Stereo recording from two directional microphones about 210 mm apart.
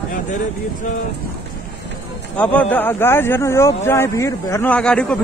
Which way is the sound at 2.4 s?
5° left (ahead or behind).